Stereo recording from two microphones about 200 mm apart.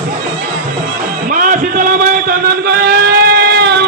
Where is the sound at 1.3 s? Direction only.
40° right (ahead or behind).